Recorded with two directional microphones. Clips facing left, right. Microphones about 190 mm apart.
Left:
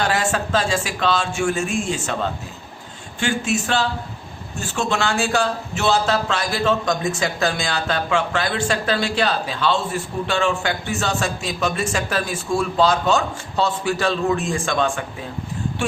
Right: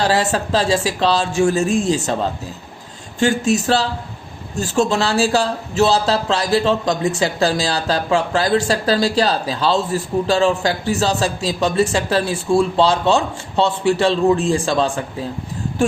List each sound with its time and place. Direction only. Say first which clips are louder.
0.0 s a man's voice: right 4 dB; 35° right (ahead or behind)